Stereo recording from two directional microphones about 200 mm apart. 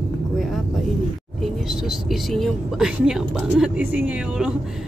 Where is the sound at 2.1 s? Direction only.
Centre (ahead or behind).